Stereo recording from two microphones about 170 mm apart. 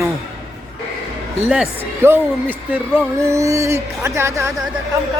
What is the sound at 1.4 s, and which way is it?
Speech, 5° right (ahead or behind).